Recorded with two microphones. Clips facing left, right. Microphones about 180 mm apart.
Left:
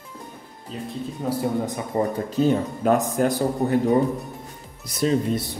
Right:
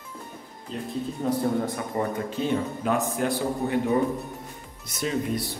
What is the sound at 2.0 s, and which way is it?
Speech, 35° left (ahead or behind).